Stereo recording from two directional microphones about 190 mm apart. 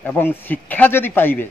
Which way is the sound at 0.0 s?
10° left (ahead or behind).